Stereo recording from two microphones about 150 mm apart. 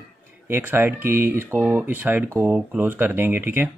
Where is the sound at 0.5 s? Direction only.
15° right (ahead or behind).